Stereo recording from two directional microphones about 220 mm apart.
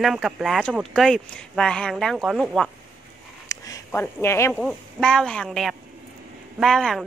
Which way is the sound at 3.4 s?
15° left (ahead or behind).